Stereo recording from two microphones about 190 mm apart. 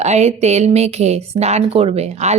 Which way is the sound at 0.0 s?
35° right (ahead or behind).